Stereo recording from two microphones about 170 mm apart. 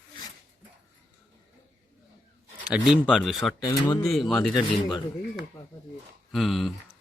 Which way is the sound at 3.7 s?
25° left (ahead or behind).